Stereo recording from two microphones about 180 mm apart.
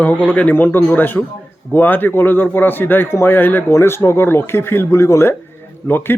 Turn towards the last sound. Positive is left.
turn(degrees=10)  # may be behind; listen again after turning